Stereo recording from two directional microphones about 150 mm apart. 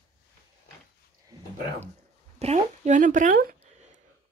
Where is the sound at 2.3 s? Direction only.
45° right (ahead or behind).